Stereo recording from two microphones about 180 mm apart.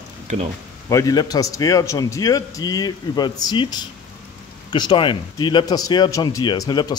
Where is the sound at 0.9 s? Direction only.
20° left (ahead or behind).